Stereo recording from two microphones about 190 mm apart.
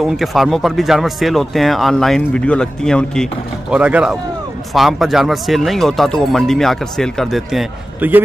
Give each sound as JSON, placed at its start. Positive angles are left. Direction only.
{"t": 0.0, "sound": "speech", "side_deg": 0}